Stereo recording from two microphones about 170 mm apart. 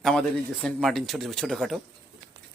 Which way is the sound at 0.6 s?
Centre (ahead or behind).